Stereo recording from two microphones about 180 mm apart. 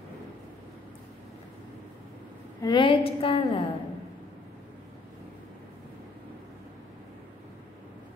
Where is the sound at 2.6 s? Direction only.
25° left (ahead or behind).